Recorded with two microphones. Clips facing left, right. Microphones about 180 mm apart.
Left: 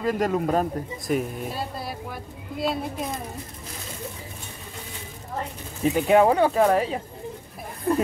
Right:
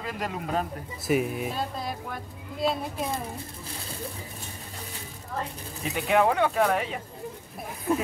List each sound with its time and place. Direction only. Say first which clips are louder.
0.0 s speech: left 10 dB; 45° left (ahead or behind)
1.0 s speech: right 2 dB; 5° right (ahead or behind)
1.5 s speech: even; 5° left (ahead or behind)
5.8 s speech: left 6 dB; 35° left (ahead or behind)